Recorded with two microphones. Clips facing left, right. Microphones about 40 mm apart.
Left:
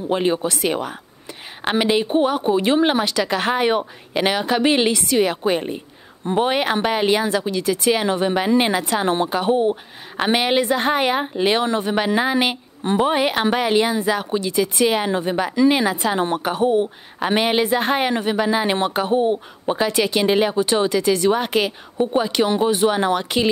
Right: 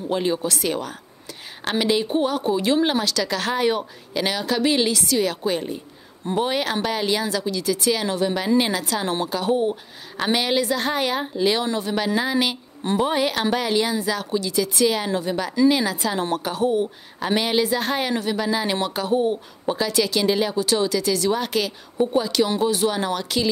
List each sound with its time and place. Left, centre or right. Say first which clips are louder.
0.1 s speech: left 3 dB; left